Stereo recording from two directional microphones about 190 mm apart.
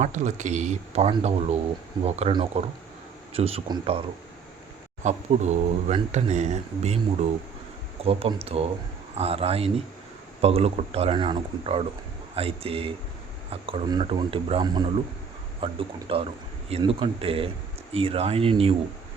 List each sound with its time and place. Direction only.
0.0 s speech: 40° right (ahead or behind)
5.0 s speech: 35° right (ahead or behind)